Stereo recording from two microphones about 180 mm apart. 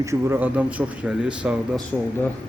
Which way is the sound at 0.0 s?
15° right (ahead or behind).